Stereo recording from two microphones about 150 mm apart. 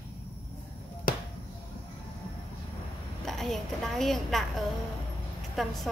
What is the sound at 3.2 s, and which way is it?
A woman's voice, centre (ahead or behind).